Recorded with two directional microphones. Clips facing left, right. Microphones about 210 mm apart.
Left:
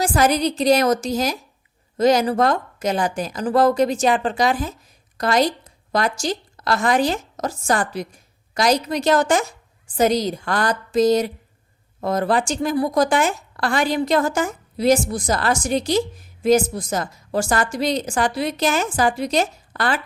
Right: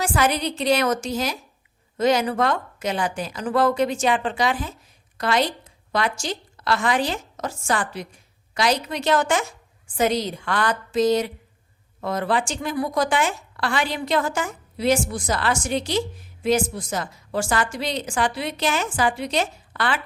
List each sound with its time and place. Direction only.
0.0 s a woman's voice: 40° left (ahead or behind)